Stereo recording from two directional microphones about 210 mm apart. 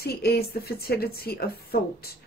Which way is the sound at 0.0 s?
45° left (ahead or behind).